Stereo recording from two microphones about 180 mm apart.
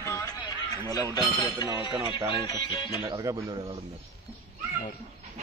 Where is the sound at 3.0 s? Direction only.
15° right (ahead or behind).